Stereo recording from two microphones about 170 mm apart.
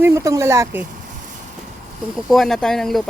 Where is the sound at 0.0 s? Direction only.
15° right (ahead or behind).